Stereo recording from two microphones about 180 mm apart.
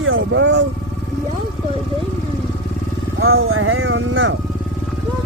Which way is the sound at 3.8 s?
90° right.